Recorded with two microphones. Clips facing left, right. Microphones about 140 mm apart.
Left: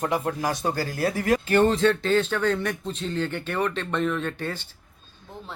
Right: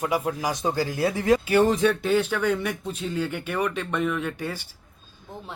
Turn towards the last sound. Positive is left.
turn(degrees=-10)  # may be behind; listen again after turning